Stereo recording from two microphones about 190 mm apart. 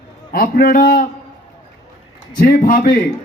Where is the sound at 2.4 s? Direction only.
50° left (ahead or behind).